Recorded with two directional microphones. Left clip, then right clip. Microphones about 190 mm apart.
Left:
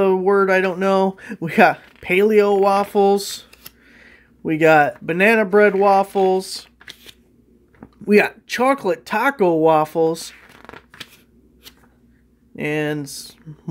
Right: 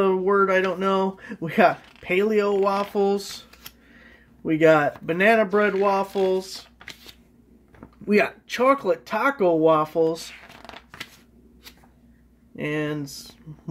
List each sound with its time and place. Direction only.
0.0 s speech: 35° left (ahead or behind)
8.0 s speech: 35° left (ahead or behind)
10.2 s shuffling cards: 15° right (ahead or behind)
12.5 s speech: 40° left (ahead or behind)